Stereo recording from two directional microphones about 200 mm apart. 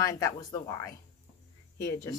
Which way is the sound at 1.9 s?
15° left (ahead or behind).